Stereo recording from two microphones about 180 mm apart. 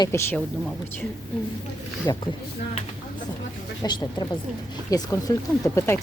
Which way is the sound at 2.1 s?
20° left (ahead or behind).